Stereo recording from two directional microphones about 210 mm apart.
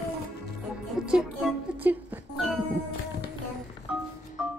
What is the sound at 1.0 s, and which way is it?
Music, 5° right (ahead or behind).